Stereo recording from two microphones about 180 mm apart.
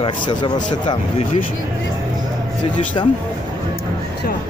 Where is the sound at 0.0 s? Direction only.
25° left (ahead or behind).